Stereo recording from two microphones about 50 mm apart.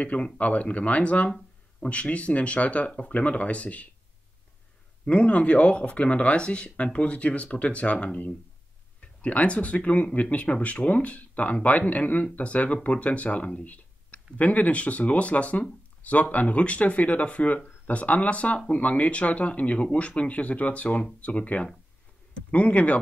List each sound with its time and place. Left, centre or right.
0.0 s speech: left
5.0 s speech: left